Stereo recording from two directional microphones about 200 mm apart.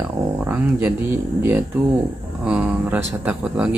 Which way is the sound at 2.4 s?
5° right (ahead or behind).